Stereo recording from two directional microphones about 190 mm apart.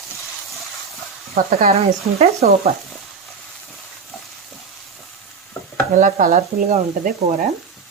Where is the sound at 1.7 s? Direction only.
35° right (ahead or behind).